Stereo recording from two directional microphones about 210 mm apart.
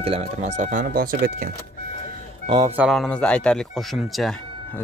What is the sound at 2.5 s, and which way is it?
Speech, 25° right (ahead or behind).